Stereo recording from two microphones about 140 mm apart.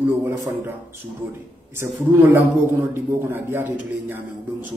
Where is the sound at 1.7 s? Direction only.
15° right (ahead or behind).